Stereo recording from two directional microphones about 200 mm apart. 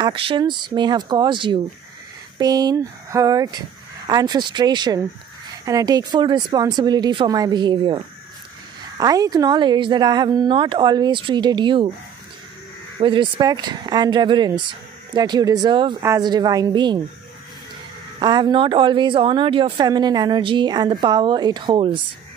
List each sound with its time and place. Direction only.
0.0 s a woman's voice: 25° right (ahead or behind)
13.0 s a woman's voice: 25° right (ahead or behind)
18.2 s a woman's voice: 25° right (ahead or behind)